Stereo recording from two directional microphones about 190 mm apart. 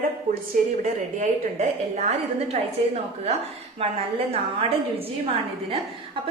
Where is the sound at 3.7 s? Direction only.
30° right (ahead or behind).